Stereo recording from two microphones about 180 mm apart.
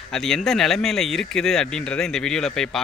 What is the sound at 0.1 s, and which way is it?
Speech, centre (ahead or behind).